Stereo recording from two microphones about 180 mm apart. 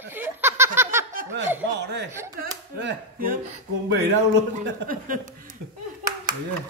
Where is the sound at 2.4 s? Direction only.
70° right (ahead or behind).